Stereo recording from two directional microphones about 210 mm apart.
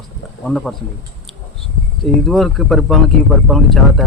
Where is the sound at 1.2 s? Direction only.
Centre (ahead or behind).